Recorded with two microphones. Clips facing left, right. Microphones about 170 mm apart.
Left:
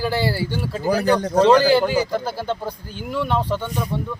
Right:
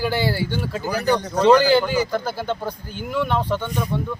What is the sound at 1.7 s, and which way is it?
Speech, centre (ahead or behind).